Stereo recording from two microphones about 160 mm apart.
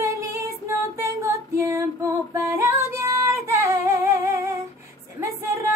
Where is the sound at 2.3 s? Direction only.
20° right (ahead or behind).